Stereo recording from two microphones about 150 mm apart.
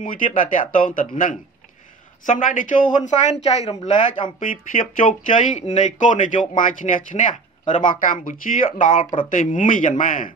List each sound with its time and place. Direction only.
0.0 s speech: 60° left (ahead or behind)